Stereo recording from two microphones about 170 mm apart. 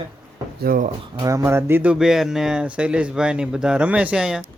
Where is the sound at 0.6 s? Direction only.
55° right (ahead or behind).